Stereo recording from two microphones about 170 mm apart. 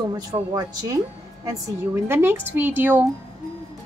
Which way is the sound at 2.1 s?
15° right (ahead or behind).